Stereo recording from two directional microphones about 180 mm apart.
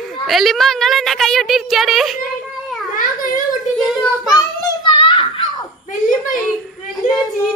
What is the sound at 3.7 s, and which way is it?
Child singing, centre (ahead or behind).